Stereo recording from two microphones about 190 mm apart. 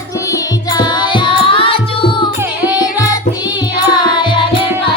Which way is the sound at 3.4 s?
20° left (ahead or behind).